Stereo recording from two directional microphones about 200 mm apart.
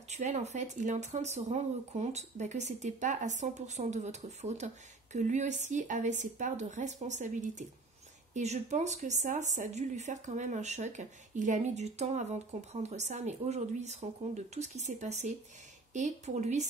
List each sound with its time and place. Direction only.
0.1 s speech: 35° right (ahead or behind)